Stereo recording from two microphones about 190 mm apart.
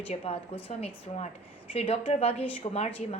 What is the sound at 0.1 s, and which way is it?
Speech, 30° left (ahead or behind).